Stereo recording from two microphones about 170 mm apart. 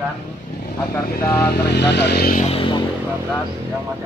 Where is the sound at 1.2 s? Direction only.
15° left (ahead or behind).